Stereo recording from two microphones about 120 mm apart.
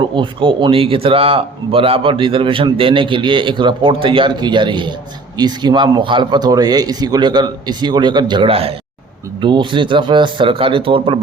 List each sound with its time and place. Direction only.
0.0 s a man's voice: 45° right (ahead or behind)
9.4 s a man's voice: 40° right (ahead or behind)